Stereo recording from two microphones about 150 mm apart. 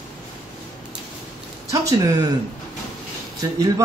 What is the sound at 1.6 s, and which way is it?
Speech, 20° right (ahead or behind).